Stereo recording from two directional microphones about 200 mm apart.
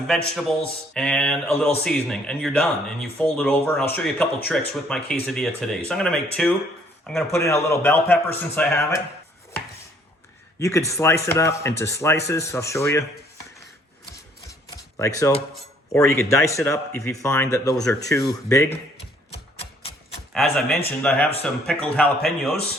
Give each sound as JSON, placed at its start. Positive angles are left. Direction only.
{"t": 0.3, "sound": "speech", "side_deg": 5}
{"t": 7.3, "sound": "speech", "side_deg": 15}
{"t": 10.6, "sound": "speech", "side_deg": 15}
{"t": 14.9, "sound": "speech", "side_deg": 15}
{"t": 20.3, "sound": "speech", "side_deg": 0}